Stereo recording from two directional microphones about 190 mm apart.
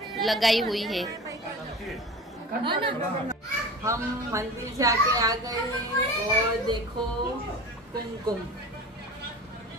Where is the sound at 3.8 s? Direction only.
15° right (ahead or behind).